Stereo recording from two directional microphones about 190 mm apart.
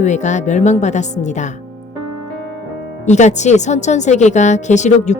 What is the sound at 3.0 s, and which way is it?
A woman's voice, 40° left (ahead or behind).